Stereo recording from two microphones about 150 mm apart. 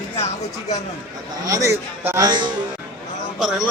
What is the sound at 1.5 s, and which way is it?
Speech, 20° right (ahead or behind).